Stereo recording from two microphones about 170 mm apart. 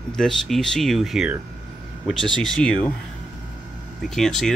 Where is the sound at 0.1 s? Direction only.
5° left (ahead or behind).